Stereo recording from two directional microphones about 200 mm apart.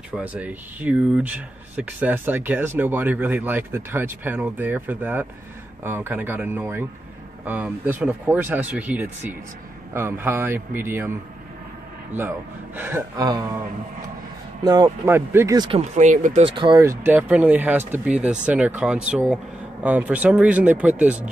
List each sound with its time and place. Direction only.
0.1 s speech: 5° right (ahead or behind)
14.6 s speech: 20° right (ahead or behind)
16.0 s speech: 40° right (ahead or behind)
16.4 s speech: 25° right (ahead or behind)
17.0 s speech: 10° right (ahead or behind)